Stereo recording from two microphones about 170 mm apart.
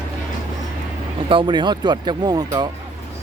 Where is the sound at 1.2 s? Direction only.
30° right (ahead or behind).